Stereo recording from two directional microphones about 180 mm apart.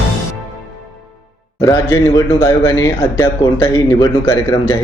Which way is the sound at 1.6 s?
20° left (ahead or behind).